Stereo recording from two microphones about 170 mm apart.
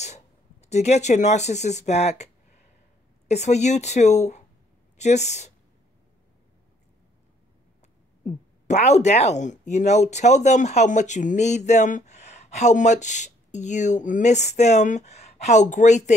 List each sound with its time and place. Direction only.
0.0 s a sound: 40° left (ahead or behind)
3.3 s a woman's voice: 40° left (ahead or behind)
8.6 s speech: 40° left (ahead or behind)